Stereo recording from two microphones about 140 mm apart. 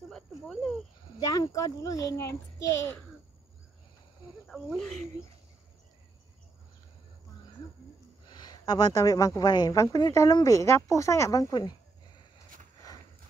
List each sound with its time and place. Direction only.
0.1 s a sound: centre (ahead or behind)
1.3 s a woman's voice: 25° left (ahead or behind)
4.5 s speech: centre (ahead or behind)
8.3 s a woman's voice: 30° left (ahead or behind)